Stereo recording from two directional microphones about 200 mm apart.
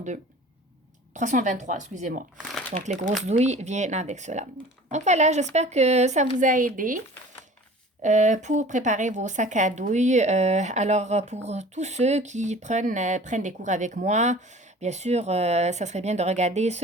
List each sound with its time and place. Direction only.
1.1 s speech: 35° right (ahead or behind)
8.0 s speech: 40° right (ahead or behind)